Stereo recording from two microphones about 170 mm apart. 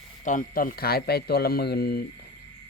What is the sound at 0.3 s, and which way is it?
Speech, 55° left (ahead or behind).